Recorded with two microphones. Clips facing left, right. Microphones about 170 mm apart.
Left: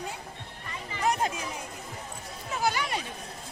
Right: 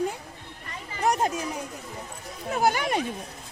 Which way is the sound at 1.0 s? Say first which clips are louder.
Right 3 dB; 40° right (ahead or behind).